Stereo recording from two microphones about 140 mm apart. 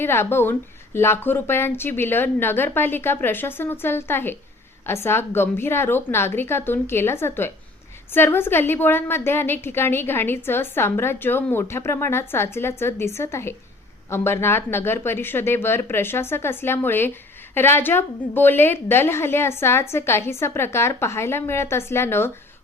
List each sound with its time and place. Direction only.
0.0 s a woman's voice: 15° left (ahead or behind)